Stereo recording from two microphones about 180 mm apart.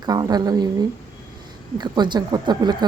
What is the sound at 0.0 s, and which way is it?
A woman's voice, 20° right (ahead or behind).